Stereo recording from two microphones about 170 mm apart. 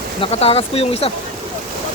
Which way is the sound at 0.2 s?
35° left (ahead or behind).